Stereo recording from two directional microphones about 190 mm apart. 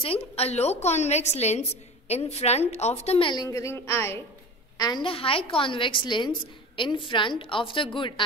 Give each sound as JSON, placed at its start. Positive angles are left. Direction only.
{"t": 0.0, "sound": "a woman's voice", "side_deg": 30}